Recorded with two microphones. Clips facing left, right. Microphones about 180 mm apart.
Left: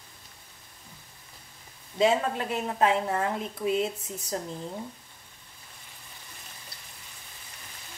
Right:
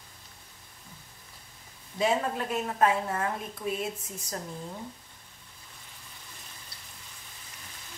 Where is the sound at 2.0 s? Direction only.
20° left (ahead or behind).